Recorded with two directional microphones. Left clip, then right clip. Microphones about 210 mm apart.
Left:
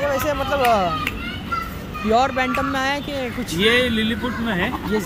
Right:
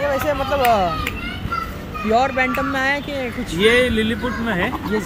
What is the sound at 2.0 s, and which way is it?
Speech, 20° left (ahead or behind).